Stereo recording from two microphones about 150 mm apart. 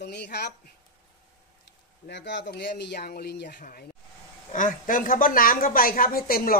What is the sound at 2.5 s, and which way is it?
Speech, 90° left.